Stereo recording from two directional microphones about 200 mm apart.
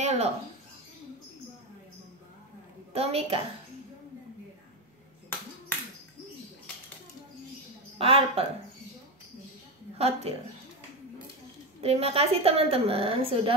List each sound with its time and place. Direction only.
0.0 s a sound: 35° right (ahead or behind)
2.9 s a woman's voice: 30° right (ahead or behind)
8.0 s a woman's voice: 30° right (ahead or behind)
9.9 s a woman's voice: 30° right (ahead or behind)
11.8 s a woman's voice: 30° right (ahead or behind)